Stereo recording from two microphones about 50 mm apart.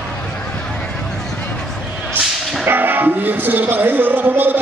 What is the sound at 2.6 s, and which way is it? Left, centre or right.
Music, right.